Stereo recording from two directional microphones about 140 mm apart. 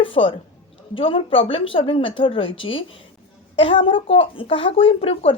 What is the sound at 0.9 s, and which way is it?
A woman's voice, 40° left (ahead or behind).